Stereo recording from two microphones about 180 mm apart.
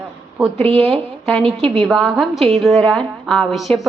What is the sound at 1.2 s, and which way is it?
A woman's voice, 5° left (ahead or behind).